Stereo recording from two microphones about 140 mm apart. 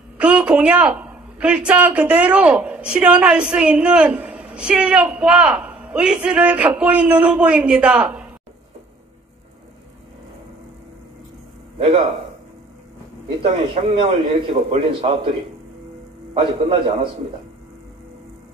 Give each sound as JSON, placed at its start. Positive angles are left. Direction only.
{"t": 0.2, "sound": "a woman's voice", "side_deg": -10}
{"t": 13.4, "sound": "a man's voice", "side_deg": -40}
{"t": 16.3, "sound": "a man's voice", "side_deg": -40}